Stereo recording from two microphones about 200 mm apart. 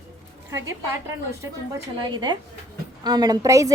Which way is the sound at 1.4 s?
20° right (ahead or behind).